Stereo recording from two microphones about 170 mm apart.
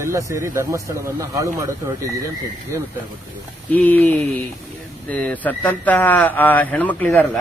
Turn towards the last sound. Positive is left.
turn(degrees=10)  # may be behind; listen again after turning